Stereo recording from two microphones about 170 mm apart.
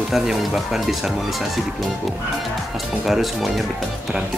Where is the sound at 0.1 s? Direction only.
Centre (ahead or behind).